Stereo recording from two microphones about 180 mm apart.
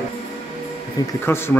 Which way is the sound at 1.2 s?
15° left (ahead or behind).